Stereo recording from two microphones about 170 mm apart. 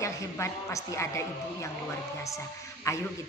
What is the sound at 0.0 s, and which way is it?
A woman's voice, 15° left (ahead or behind).